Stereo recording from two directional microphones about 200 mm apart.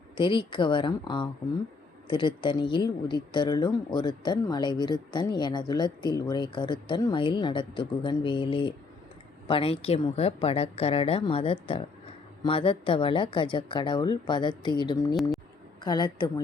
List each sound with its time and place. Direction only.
0.2 s speech: 25° left (ahead or behind)